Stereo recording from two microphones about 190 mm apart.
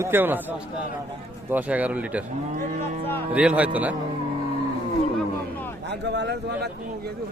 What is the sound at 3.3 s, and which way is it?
Speech, 5° right (ahead or behind).